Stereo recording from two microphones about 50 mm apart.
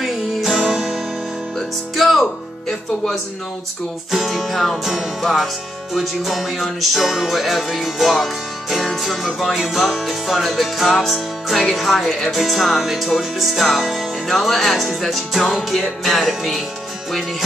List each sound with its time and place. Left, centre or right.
0.0 s music: centre
0.6 s music: centre
2.0 s music: centre
4.1 s music: centre